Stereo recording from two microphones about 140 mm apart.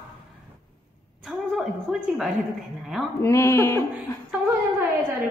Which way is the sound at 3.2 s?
20° left (ahead or behind).